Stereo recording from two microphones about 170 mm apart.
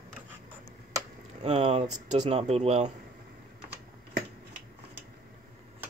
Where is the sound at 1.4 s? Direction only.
40° right (ahead or behind).